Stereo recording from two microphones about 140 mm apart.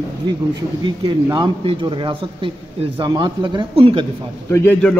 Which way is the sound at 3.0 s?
35° right (ahead or behind).